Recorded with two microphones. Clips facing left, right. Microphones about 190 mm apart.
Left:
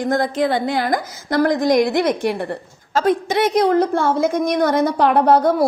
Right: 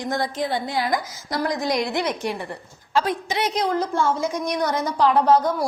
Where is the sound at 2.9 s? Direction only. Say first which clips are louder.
Left 6 dB; 50° left (ahead or behind).